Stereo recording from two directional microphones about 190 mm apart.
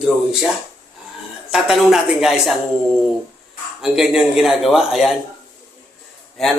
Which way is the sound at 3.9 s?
Centre (ahead or behind).